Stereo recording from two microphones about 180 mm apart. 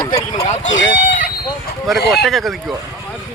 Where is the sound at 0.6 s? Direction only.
90° left.